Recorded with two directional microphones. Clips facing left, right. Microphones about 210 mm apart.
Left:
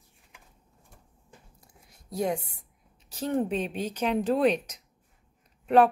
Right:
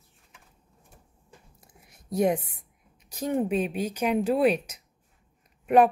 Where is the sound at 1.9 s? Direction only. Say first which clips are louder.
Right 5 dB; 20° right (ahead or behind).